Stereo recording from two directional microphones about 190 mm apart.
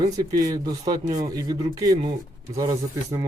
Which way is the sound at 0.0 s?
20° right (ahead or behind).